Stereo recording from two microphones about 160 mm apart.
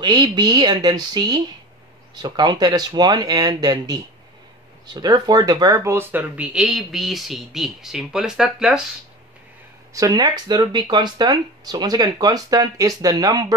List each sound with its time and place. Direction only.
0.0 s speech: 25° right (ahead or behind); by 8.8 s 5° right (ahead or behind)
9.9 s speech: 25° right (ahead or behind)